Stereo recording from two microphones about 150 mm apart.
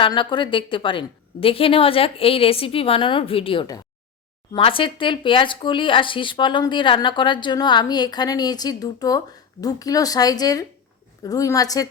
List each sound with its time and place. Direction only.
0.0 s a woman's voice: 30° left (ahead or behind)